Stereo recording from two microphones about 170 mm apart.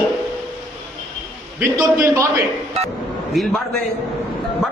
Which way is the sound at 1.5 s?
10° right (ahead or behind).